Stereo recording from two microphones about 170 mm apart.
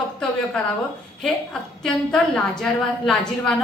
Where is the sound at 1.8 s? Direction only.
5° left (ahead or behind).